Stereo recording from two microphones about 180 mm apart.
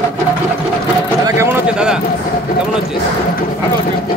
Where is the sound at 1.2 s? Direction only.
15° right (ahead or behind).